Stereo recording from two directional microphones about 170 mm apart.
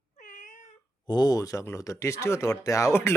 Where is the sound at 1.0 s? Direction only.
25° left (ahead or behind).